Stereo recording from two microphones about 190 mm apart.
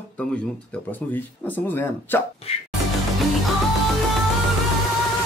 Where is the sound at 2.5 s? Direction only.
30° left (ahead or behind).